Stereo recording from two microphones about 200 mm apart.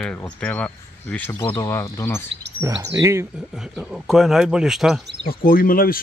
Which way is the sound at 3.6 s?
5° right (ahead or behind).